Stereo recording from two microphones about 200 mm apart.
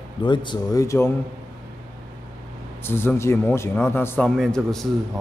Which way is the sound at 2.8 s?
10° left (ahead or behind).